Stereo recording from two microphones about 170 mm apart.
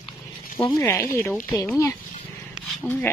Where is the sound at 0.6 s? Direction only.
20° left (ahead or behind).